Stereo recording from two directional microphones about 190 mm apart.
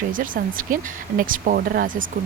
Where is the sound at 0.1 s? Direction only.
45° right (ahead or behind).